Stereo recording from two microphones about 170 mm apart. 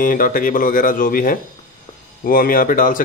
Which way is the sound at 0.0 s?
55° left (ahead or behind).